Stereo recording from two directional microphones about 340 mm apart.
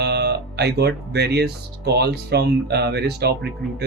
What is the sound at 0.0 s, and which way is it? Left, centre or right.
Speech, right.